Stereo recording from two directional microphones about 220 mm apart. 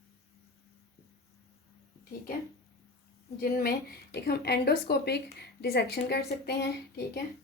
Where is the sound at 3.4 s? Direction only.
45° left (ahead or behind).